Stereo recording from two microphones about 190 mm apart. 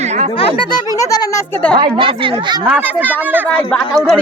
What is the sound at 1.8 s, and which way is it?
Speech, 25° right (ahead or behind).